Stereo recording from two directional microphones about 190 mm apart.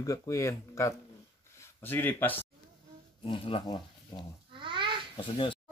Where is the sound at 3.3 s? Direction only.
25° left (ahead or behind).